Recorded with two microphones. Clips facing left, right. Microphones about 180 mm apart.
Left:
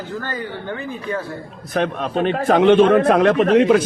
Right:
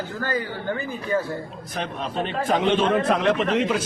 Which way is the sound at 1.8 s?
60° left (ahead or behind).